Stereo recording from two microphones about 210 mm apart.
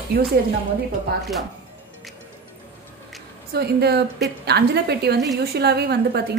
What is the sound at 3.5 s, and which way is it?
A woman's voice, 50° right (ahead or behind).